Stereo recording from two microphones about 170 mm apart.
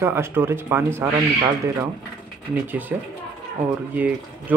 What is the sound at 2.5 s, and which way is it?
Speech, 10° right (ahead or behind).